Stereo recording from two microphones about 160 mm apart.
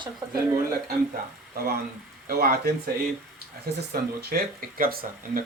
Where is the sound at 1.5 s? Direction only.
75° right (ahead or behind).